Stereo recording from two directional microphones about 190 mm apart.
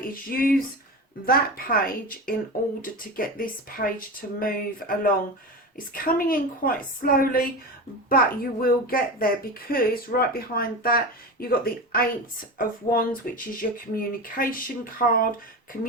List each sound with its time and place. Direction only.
0.1 s speech: 50° left (ahead or behind)